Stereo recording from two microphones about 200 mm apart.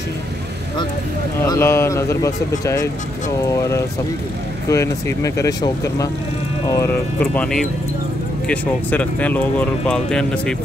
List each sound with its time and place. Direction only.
1.4 s speech: 10° left (ahead or behind)